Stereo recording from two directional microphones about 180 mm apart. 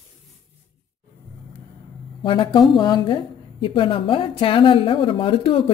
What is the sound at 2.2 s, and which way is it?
A woman's voice, 25° left (ahead or behind).